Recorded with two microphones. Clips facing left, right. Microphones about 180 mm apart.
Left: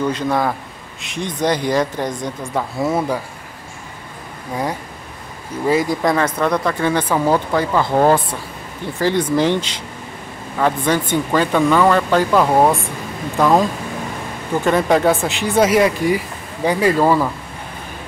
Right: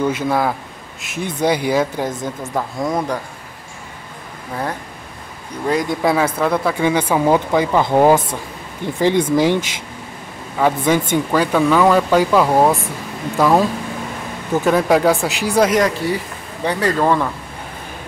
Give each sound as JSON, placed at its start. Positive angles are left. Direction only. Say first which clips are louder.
{"t": 0.0, "sound": "speech", "louder": "right 1 dB", "side_deg": -10}
{"t": 2.5, "sound": "speech", "louder": "left 2 dB", "side_deg": 5}
{"t": 5.7, "sound": "speech", "louder": "left 1 dB", "side_deg": 0}
{"t": 10.6, "sound": "speech", "louder": "right 2 dB", "side_deg": -10}